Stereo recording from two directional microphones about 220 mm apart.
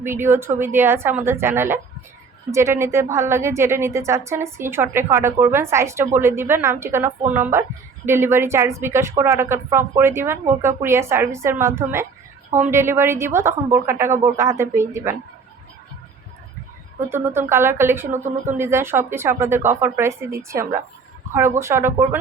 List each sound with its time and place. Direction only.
0.0 s a woman's voice: 10° right (ahead or behind)
12.5 s a woman's voice: 35° right (ahead or behind)
12.7 s a woman's voice: 10° right (ahead or behind)
17.1 s a woman's voice: 10° right (ahead or behind)